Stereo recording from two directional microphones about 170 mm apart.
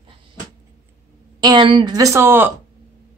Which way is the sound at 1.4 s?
25° right (ahead or behind).